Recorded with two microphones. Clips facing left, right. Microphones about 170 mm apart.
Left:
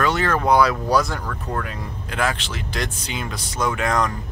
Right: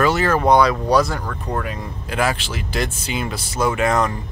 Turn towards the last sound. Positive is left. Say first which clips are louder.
# right 3 dB
turn(degrees=-5)  # may be behind; listen again after turning